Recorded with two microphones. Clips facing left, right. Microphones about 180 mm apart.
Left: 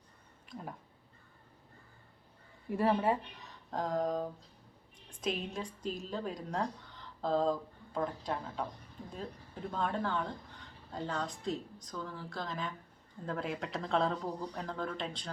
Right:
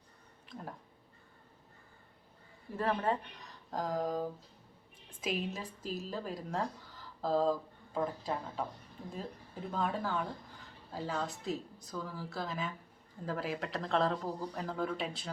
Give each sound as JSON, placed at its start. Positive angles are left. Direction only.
{"t": 2.7, "sound": "speech", "side_deg": 10}